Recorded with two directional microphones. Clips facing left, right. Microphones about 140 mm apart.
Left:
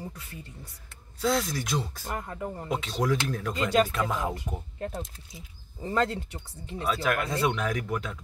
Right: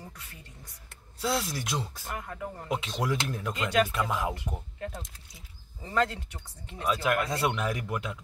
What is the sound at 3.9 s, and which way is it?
Speech, 5° right (ahead or behind).